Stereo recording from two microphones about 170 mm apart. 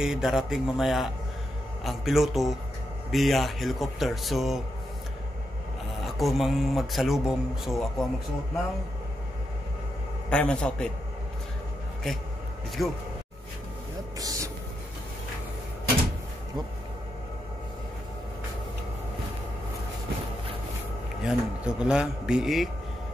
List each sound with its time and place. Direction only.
0.0 s speech: centre (ahead or behind)
6.0 s speech: centre (ahead or behind)
10.3 s speech: 5° left (ahead or behind)
12.8 s speech: centre (ahead or behind)
14.1 s vehicle: 20° right (ahead or behind)
21.2 s speech: 5° right (ahead or behind)